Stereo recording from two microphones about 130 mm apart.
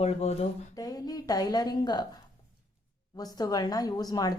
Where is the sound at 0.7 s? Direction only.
30° left (ahead or behind).